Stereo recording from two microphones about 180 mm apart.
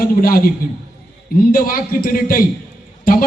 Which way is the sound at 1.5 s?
55° left (ahead or behind).